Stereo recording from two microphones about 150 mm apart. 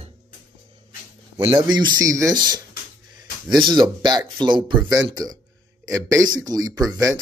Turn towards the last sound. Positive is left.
turn(degrees=-25)  # may be behind; listen again after turning